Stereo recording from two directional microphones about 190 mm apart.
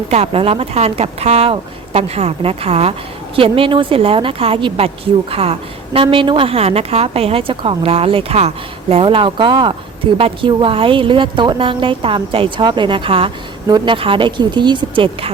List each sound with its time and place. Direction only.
0.1 s a woman's voice: 30° right (ahead or behind)